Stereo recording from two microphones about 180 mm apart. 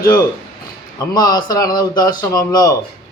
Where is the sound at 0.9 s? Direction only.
20° left (ahead or behind).